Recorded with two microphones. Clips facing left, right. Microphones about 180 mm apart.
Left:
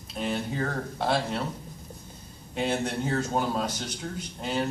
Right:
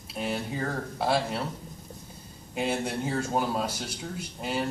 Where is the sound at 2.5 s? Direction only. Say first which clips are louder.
Left 1 dB; 5° right (ahead or behind).